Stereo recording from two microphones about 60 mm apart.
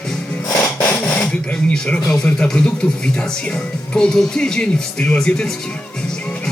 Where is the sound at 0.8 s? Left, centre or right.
Centre.